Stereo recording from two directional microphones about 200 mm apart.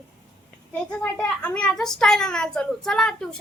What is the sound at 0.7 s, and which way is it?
A woman's voice, 5° left (ahead or behind).